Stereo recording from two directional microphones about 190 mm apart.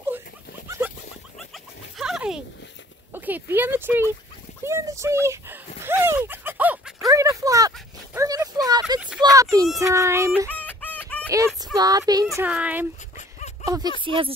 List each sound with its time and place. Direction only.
0.7 s rodents: 10° right (ahead or behind)
2.0 s a sound: 5° right (ahead or behind)
3.1 s speech: 10° right (ahead or behind)
4.6 s a sound: 15° right (ahead or behind)
9.2 s speech: 15° right (ahead or behind)
10.6 s chicken: 10° left (ahead or behind)
11.2 s speech: 15° right (ahead or behind)
13.7 s speech: 20° right (ahead or behind)